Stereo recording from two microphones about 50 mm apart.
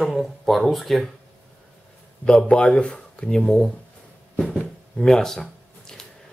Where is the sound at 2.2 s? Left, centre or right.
Centre.